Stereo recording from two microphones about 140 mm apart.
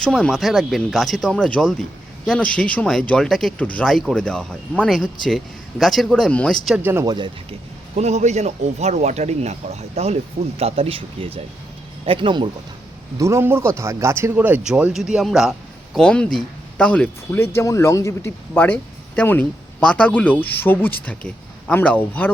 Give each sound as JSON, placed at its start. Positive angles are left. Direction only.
{"t": 0.0, "sound": "speech", "side_deg": 5}
{"t": 6.7, "sound": "speech", "side_deg": -15}
{"t": 7.0, "sound": "speech", "side_deg": -30}
{"t": 7.9, "sound": "speech", "side_deg": -55}
{"t": 13.1, "sound": "speech", "side_deg": -20}